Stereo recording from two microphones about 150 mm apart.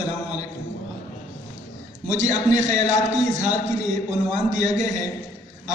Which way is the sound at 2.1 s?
50° right (ahead or behind).